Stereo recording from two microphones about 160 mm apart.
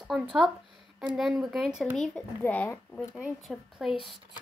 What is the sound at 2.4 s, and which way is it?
A woman's voice, 10° left (ahead or behind).